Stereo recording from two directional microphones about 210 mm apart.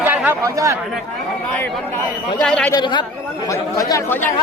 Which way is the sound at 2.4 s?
5° left (ahead or behind).